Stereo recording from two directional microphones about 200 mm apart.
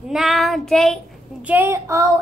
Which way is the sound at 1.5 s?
15° right (ahead or behind).